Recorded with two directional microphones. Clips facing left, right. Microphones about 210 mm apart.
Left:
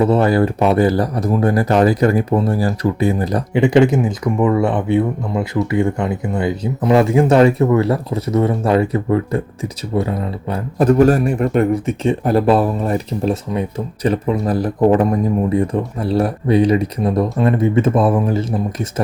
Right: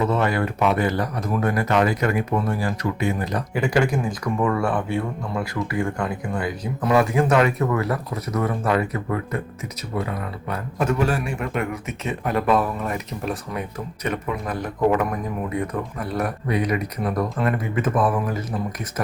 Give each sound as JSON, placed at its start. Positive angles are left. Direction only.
{"t": 0.0, "sound": "speech", "side_deg": 35}
{"t": 3.6, "sound": "speech", "side_deg": 25}